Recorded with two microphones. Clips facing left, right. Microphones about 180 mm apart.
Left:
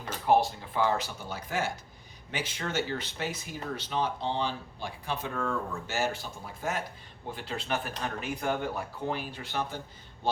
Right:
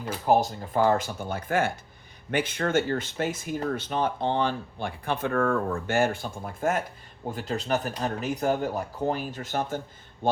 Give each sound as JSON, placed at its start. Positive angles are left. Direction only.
{"t": 0.3, "sound": "speech", "side_deg": -45}